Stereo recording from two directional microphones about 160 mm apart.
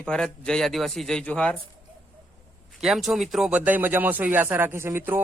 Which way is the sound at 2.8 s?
5° right (ahead or behind).